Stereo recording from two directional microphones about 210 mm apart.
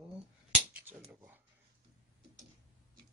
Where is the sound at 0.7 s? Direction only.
10° right (ahead or behind).